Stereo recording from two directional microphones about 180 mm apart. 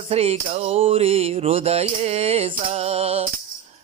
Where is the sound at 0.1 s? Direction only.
35° right (ahead or behind).